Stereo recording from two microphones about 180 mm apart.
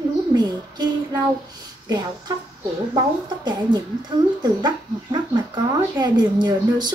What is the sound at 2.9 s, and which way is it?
Speech, 25° right (ahead or behind).